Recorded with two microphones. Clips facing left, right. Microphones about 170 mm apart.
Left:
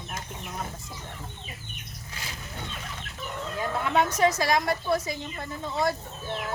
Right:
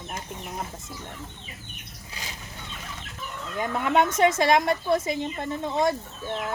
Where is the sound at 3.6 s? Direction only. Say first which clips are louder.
Right 3 dB; 20° right (ahead or behind).